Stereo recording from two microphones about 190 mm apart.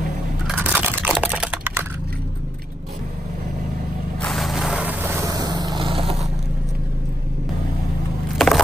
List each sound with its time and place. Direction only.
0.5 s crunch: 5° right (ahead or behind)
1.2 s typing: 5° right (ahead or behind)
4.2 s vehicle: centre (ahead or behind); by 6.2 s 30° right (ahead or behind)
8.4 s a sound: centre (ahead or behind)